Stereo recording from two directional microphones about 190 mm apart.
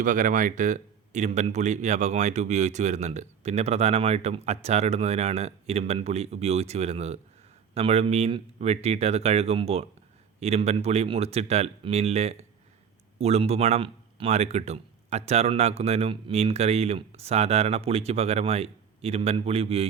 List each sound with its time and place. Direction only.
0.0 s speech: 40° right (ahead or behind)